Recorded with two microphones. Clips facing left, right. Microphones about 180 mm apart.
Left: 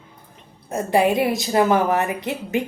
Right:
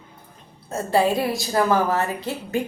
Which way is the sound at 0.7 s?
15° left (ahead or behind).